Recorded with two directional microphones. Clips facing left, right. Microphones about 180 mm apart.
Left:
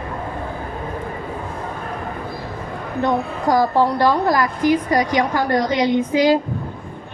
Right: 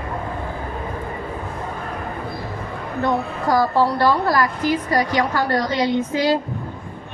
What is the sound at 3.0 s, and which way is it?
Speech, 15° left (ahead or behind).